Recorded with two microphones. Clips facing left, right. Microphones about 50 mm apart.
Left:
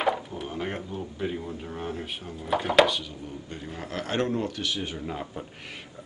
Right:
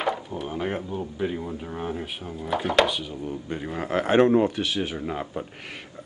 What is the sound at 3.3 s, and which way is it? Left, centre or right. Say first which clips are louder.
A man's voice: right 7 dB; right.